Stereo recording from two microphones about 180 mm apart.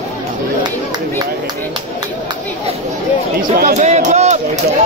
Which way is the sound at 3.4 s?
50° right (ahead or behind).